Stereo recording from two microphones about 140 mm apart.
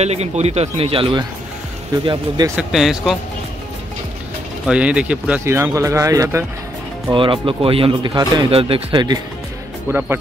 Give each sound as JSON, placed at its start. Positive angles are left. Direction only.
{"t": 0.0, "sound": "speech", "side_deg": -50}
{"t": 2.5, "sound": "speech", "side_deg": -5}
{"t": 4.6, "sound": "speech", "side_deg": -10}
{"t": 5.4, "sound": "speech", "side_deg": -20}
{"t": 7.1, "sound": "speech", "side_deg": -40}
{"t": 8.5, "sound": "speech", "side_deg": -40}
{"t": 9.8, "sound": "speech", "side_deg": -15}